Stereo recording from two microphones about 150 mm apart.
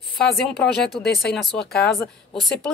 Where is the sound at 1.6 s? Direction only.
90° left.